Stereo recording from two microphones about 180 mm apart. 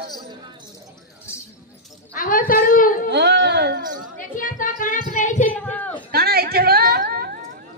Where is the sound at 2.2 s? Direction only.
50° left (ahead or behind).